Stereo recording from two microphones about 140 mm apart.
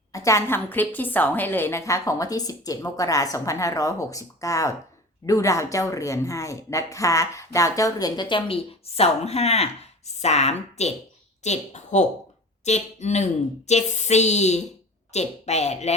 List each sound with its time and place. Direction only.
0.1 s a woman's voice: 20° left (ahead or behind); by 16.0 s 50° left (ahead or behind)